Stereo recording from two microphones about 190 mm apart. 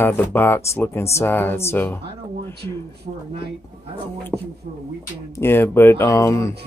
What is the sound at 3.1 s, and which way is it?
Speech, 45° right (ahead or behind).